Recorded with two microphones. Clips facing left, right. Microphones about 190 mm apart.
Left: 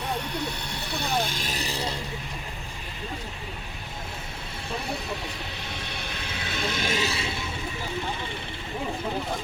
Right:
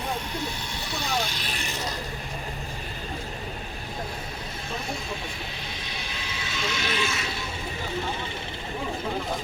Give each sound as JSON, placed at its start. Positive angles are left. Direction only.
{"t": 0.4, "sound": "speech", "side_deg": 60}
{"t": 6.0, "sound": "vehicle", "side_deg": 60}